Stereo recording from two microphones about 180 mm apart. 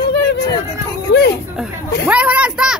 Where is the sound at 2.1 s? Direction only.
5° right (ahead or behind).